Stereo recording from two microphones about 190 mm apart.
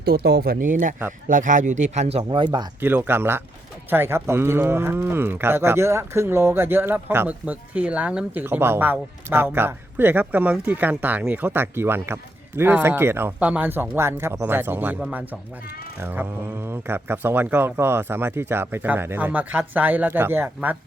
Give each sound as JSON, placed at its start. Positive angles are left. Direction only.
{"t": 0.0, "sound": "speech", "side_deg": -60}
{"t": 2.8, "sound": "speech", "side_deg": -10}